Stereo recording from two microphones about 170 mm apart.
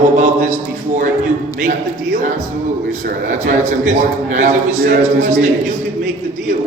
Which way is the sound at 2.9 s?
45° right (ahead or behind).